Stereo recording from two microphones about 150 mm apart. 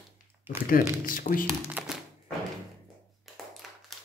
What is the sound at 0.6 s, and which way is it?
Speech, 70° left (ahead or behind).